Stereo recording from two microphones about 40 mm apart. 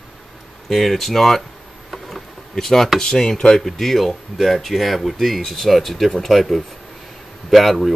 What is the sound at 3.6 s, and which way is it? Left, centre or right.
Speech, centre.